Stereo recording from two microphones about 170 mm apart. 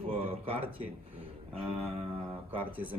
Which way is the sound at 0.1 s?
35° right (ahead or behind).